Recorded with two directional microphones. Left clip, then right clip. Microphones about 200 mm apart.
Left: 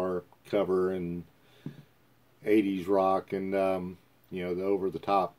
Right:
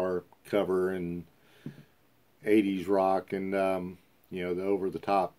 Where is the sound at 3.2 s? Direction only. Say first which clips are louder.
Left 1 dB; centre (ahead or behind).